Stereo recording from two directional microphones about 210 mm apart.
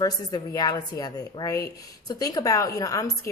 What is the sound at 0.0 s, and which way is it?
Speech, 20° left (ahead or behind).